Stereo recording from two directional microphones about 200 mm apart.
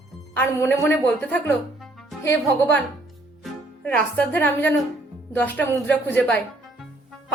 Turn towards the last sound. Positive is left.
turn(degrees=5)  # may be behind; listen again after turning